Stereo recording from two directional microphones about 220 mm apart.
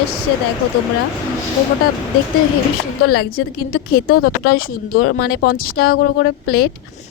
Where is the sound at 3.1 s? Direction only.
45° left (ahead or behind).